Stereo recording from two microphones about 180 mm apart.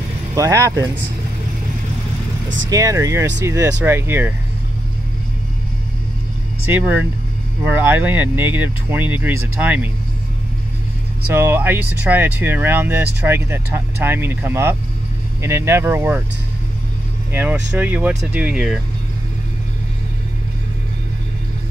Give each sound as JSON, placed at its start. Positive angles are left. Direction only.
{"t": 0.3, "sound": "speech", "side_deg": -15}
{"t": 2.7, "sound": "speech", "side_deg": -20}
{"t": 6.6, "sound": "speech", "side_deg": -10}
{"t": 11.3, "sound": "speech", "side_deg": -10}
{"t": 17.3, "sound": "speech", "side_deg": -10}